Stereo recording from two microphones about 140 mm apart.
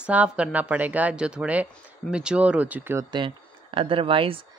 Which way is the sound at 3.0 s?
35° right (ahead or behind).